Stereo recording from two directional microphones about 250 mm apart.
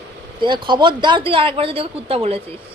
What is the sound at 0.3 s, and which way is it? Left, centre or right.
Speech, centre.